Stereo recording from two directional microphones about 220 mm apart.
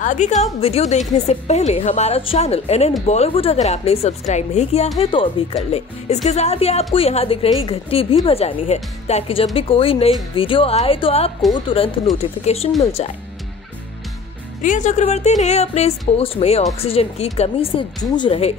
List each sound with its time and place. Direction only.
0.0 s a woman's voice: 35° left (ahead or behind)
14.6 s a woman's voice: 35° left (ahead or behind)